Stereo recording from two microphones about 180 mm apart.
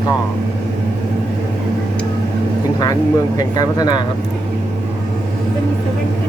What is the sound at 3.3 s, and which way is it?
Speech, 20° left (ahead or behind).